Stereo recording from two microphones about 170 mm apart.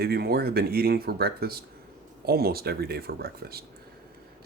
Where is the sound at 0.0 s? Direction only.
65° right (ahead or behind).